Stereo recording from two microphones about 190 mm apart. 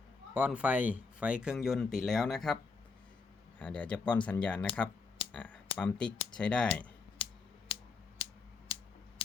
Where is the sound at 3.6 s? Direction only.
5° left (ahead or behind).